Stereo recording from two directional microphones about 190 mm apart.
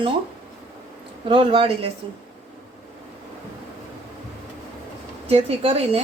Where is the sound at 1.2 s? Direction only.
25° right (ahead or behind).